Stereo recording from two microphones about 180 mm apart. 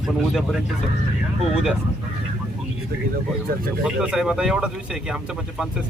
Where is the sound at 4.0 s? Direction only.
5° right (ahead or behind).